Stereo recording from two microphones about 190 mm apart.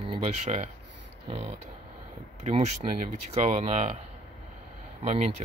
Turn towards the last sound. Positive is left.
turn(degrees=-35)  # may be behind; listen again after turning